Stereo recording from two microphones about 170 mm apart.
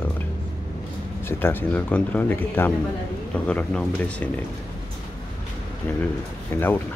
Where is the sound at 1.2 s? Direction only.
15° left (ahead or behind).